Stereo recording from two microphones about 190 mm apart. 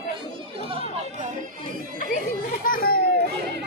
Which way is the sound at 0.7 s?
30° right (ahead or behind).